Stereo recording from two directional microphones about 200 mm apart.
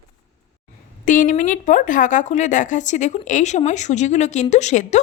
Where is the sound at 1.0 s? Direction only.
40° left (ahead or behind).